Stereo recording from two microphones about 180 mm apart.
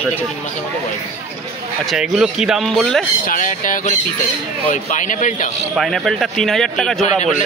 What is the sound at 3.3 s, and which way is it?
Speech, 45° left (ahead or behind).